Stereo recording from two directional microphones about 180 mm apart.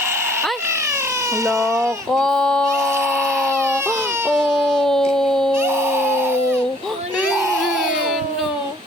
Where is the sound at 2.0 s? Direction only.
5° left (ahead or behind).